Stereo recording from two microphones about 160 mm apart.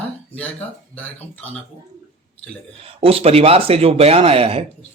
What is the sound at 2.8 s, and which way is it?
Speech, 35° right (ahead or behind).